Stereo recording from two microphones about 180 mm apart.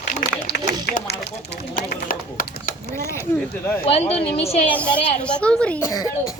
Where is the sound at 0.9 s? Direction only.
65° left (ahead or behind).